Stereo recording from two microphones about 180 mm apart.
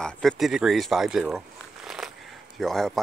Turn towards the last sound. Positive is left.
turn(degrees=0)  # may be behind; listen again after turning